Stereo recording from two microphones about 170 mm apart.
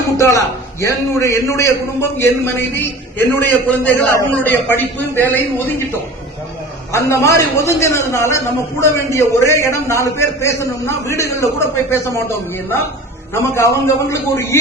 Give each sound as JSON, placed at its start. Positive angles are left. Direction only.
{"t": 0.2, "sound": "a man's voice", "side_deg": 15}
{"t": 6.9, "sound": "a man's voice", "side_deg": 15}